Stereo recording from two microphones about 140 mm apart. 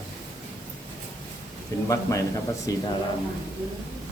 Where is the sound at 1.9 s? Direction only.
25° left (ahead or behind).